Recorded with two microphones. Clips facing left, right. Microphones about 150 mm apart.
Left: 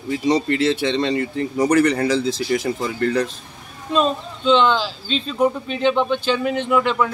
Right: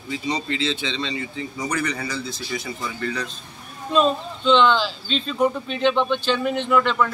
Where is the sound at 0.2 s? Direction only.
70° left (ahead or behind).